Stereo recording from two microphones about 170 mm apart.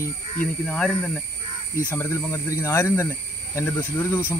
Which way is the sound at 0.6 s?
5° left (ahead or behind).